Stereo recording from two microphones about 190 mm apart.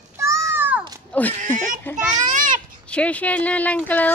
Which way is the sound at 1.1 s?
5° left (ahead or behind).